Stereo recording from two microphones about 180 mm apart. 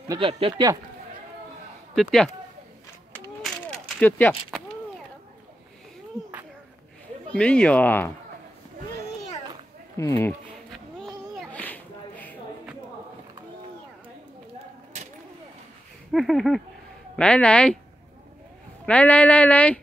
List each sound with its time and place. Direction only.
0.2 s speech: 30° right (ahead or behind)
2.0 s speech: centre (ahead or behind)
4.0 s speech: 10° left (ahead or behind)
7.2 s speech: 5° left (ahead or behind)
9.9 s speech: 15° left (ahead or behind)
10.7 s a sound: centre (ahead or behind)
16.1 s speech: centre (ahead or behind)
18.9 s speech: 5° left (ahead or behind)